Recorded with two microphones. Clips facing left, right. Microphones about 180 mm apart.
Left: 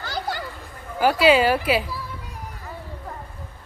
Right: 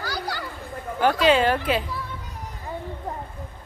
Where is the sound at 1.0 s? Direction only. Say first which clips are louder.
Left 2 dB; 10° left (ahead or behind).